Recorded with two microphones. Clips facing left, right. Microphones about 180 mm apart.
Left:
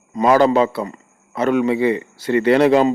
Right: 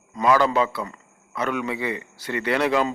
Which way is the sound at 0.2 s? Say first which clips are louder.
Left 6 dB; 30° left (ahead or behind).